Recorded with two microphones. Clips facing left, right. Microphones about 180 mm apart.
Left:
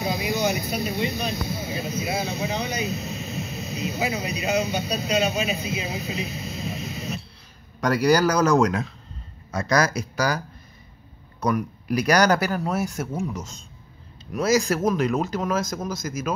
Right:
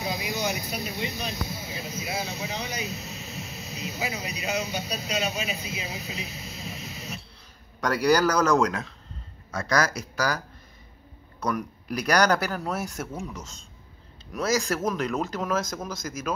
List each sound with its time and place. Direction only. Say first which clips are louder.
0.0 s speech: left 5 dB; 60° left (ahead or behind)
7.8 s speech: left 2 dB; 5° left (ahead or behind)